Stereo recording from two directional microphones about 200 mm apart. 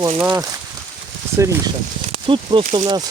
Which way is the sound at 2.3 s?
25° right (ahead or behind).